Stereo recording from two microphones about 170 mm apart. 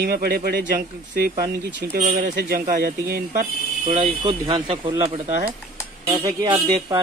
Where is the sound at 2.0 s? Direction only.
50° right (ahead or behind).